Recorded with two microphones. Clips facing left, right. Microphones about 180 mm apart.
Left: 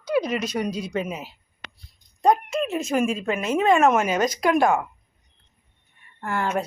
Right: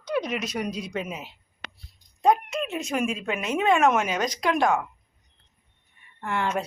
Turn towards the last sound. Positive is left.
turn(degrees=5)  # may be behind; listen again after turning